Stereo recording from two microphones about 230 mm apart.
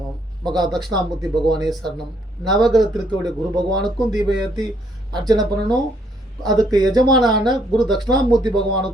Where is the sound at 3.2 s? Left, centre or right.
Centre.